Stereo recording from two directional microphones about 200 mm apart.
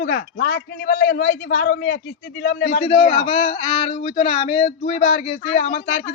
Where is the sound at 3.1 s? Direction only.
30° left (ahead or behind).